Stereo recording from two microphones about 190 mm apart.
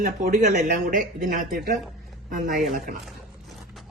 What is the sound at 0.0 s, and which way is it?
Speech, 45° right (ahead or behind).